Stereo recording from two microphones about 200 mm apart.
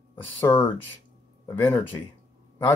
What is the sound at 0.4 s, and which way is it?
Speech, 10° left (ahead or behind).